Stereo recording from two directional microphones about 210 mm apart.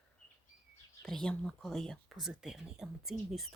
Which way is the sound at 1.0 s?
5° left (ahead or behind).